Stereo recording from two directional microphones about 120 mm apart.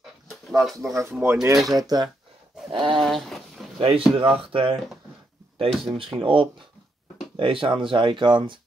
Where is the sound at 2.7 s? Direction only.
45° right (ahead or behind).